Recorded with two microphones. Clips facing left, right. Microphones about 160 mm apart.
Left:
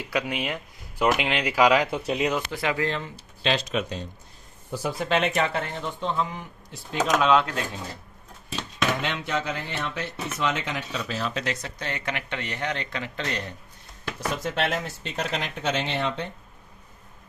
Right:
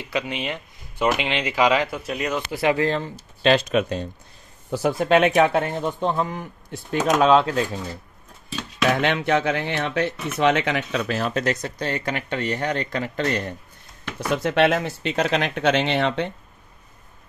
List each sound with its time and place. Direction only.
0.0 s speech: 5° left (ahead or behind)
1.9 s speech: 25° left (ahead or behind)
2.6 s speech: 30° right (ahead or behind)
3.4 s speech: 55° right (ahead or behind)
7.2 s speech: 35° right (ahead or behind)
8.9 s speech: 65° right (ahead or behind); by 13.6 s 50° right (ahead or behind)
14.3 s speech: 70° right (ahead or behind)